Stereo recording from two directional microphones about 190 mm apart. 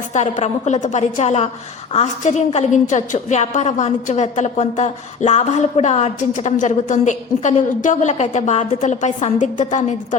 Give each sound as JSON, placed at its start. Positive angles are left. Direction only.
{"t": 0.1, "sound": "a woman's voice", "side_deg": 35}